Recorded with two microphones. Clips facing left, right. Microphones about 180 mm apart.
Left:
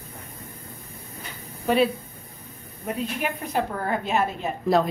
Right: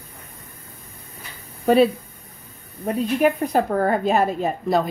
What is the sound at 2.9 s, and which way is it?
A woman's voice, 40° right (ahead or behind).